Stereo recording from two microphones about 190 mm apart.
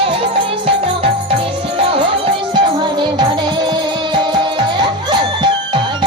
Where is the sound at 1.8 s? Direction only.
30° right (ahead or behind).